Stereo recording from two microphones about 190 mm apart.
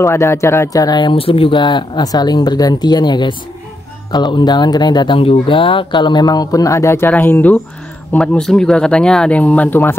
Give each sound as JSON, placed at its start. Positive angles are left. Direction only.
{"t": 0.0, "sound": "speech", "side_deg": 15}